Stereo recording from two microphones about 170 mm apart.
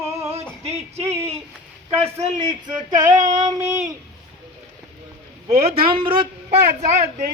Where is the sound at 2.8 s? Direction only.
25° right (ahead or behind).